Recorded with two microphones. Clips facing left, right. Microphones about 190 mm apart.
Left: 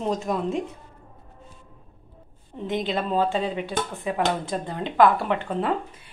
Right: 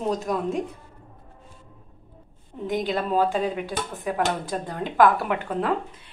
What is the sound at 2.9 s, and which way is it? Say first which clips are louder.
Speech: right 1 dB; 10° right (ahead or behind).